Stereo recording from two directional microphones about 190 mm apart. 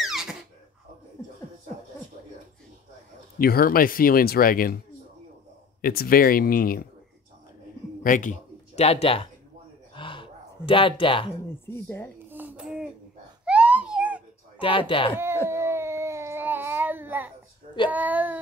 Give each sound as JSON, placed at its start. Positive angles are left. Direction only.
{"t": 0.0, "sound": "a sound", "side_deg": 0}
{"t": 3.3, "sound": "speech", "side_deg": 50}
{"t": 5.8, "sound": "speech", "side_deg": 50}
{"t": 8.0, "sound": "speech", "side_deg": 45}
{"t": 9.9, "sound": "gasp", "side_deg": 25}
{"t": 11.6, "sound": "speech", "side_deg": 10}
{"t": 12.3, "sound": "a sound", "side_deg": -10}
{"t": 14.6, "sound": "speech", "side_deg": 30}
{"t": 15.4, "sound": "baby cry", "side_deg": -15}
{"t": 17.8, "sound": "child singing", "side_deg": -10}